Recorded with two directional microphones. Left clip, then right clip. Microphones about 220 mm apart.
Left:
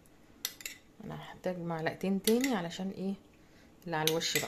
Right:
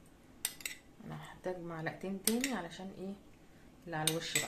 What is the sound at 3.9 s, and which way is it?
Cutlery, 55° left (ahead or behind).